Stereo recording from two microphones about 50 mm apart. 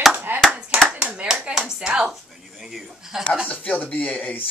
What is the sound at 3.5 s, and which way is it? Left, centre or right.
Speech, left.